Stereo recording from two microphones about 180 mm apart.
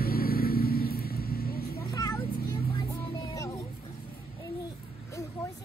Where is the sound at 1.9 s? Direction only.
20° left (ahead or behind).